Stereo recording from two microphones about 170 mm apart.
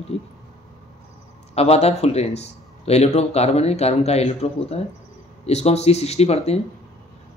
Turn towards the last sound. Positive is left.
turn(degrees=40)  # may be behind; listen again after turning